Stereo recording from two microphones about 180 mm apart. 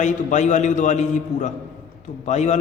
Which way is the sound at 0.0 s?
40° left (ahead or behind).